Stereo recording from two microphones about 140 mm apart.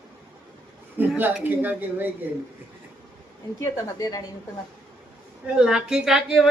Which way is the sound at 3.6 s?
25° left (ahead or behind).